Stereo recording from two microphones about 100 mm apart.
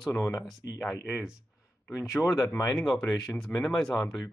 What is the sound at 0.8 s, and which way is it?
Speech, 5° left (ahead or behind).